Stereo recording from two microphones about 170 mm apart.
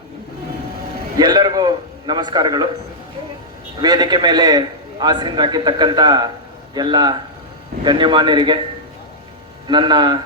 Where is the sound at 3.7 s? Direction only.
25° right (ahead or behind).